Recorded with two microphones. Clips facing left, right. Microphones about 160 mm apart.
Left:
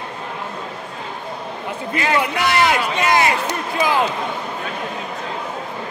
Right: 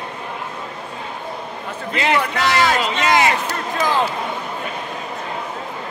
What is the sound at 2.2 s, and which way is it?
Speech, 15° left (ahead or behind).